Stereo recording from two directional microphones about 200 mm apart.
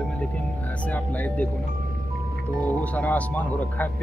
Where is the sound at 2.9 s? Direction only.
10° left (ahead or behind).